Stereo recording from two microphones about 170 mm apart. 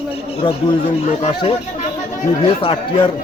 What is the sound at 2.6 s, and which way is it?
Speech, 30° left (ahead or behind).